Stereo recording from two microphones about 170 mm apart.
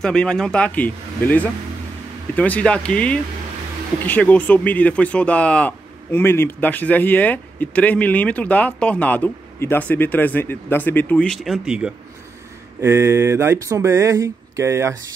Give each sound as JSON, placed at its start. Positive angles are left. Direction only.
{"t": 0.0, "sound": "speech", "side_deg": 5}
{"t": 12.8, "sound": "speech", "side_deg": -15}